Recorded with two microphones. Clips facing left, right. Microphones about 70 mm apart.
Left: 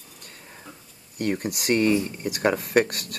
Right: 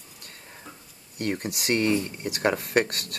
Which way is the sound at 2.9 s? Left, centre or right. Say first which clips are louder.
Left 1 dB; right.